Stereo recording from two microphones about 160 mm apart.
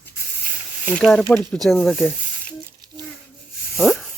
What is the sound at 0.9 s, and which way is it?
Speech, 5° left (ahead or behind).